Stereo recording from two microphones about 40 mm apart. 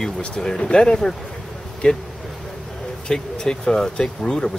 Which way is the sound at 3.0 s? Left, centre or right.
Centre.